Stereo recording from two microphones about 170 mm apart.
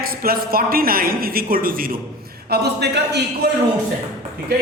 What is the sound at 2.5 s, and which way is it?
Speech, 75° right (ahead or behind).